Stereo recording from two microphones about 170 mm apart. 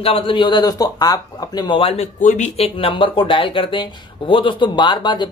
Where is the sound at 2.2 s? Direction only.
50° left (ahead or behind).